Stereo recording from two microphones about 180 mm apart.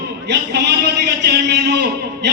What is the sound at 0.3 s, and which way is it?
A man's voice, 70° right (ahead or behind).